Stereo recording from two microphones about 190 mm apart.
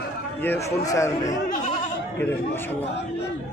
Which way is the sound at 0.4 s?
15° left (ahead or behind).